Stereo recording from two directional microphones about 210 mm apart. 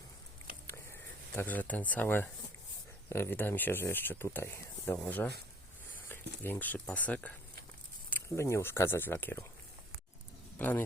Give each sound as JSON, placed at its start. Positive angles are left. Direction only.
{"t": 0.7, "sound": "a sound", "side_deg": 10}
{"t": 3.1, "sound": "speech", "side_deg": 10}
{"t": 10.6, "sound": "speech", "side_deg": 10}